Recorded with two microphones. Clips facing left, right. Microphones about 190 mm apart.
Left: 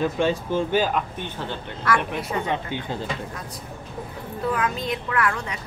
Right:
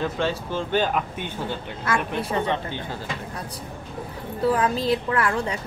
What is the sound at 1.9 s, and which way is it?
Speech, 25° right (ahead or behind).